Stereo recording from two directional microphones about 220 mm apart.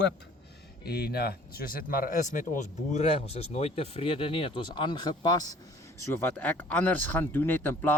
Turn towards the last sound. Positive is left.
turn(degrees=10)  # may be behind; listen again after turning